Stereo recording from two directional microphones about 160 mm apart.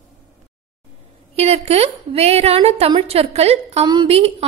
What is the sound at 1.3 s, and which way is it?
A woman's voice, 40° right (ahead or behind).